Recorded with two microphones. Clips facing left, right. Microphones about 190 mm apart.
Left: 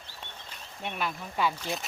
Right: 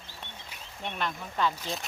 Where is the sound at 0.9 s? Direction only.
10° left (ahead or behind).